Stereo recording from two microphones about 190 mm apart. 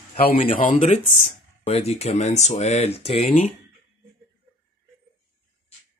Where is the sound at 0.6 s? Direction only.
40° left (ahead or behind).